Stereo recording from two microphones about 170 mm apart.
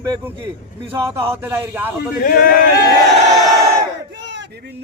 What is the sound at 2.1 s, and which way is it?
Speech, 60° left (ahead or behind).